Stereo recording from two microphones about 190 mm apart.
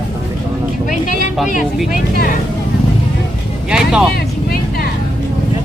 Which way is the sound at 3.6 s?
5° right (ahead or behind).